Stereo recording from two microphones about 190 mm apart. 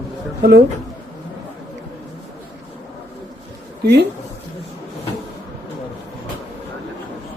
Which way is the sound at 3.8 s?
65° right (ahead or behind).